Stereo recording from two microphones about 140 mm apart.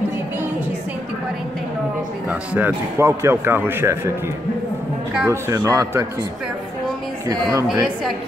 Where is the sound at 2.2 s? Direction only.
10° right (ahead or behind).